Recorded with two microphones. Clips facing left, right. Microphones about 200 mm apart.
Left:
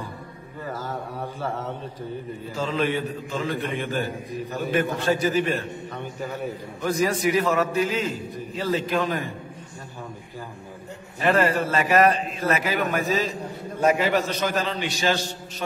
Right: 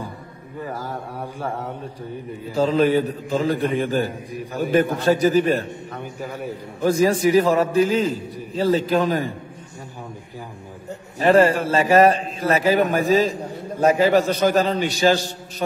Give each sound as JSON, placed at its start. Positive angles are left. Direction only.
{"t": 0.7, "sound": "mantra", "side_deg": -10}
{"t": 2.5, "sound": "a man's voice", "side_deg": -40}
{"t": 6.8, "sound": "a man's voice", "side_deg": -30}
{"t": 11.1, "sound": "a man's voice", "side_deg": -30}